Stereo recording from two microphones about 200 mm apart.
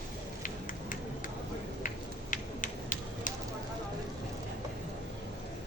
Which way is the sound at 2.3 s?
40° left (ahead or behind).